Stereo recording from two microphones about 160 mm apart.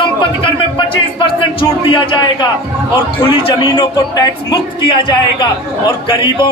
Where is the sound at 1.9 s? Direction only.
30° left (ahead or behind).